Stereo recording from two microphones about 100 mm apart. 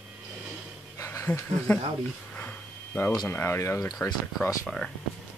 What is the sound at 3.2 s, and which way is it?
Speech, 25° left (ahead or behind).